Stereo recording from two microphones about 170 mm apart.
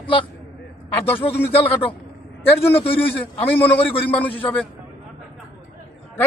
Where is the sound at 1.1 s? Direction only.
35° left (ahead or behind).